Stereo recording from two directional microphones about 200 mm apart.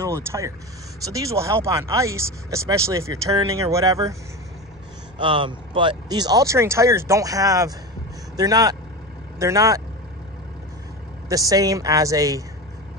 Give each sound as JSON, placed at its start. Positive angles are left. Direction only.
{"t": 0.0, "sound": "speech", "side_deg": -15}
{"t": 5.2, "sound": "speech", "side_deg": -25}
{"t": 11.2, "sound": "speech", "side_deg": -15}